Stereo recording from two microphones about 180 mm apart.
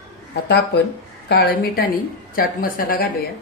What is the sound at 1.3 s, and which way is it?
Speech, 65° left (ahead or behind).